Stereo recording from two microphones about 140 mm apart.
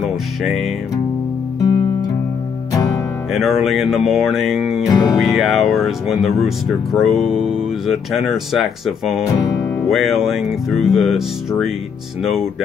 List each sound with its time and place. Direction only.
1.6 s music: 25° left (ahead or behind)
3.3 s speech: centre (ahead or behind)
4.8 s music: 25° left (ahead or behind)
5.1 s speech: centre (ahead or behind)
9.2 s speech: 25° left (ahead or behind)
9.8 s speech: centre (ahead or behind)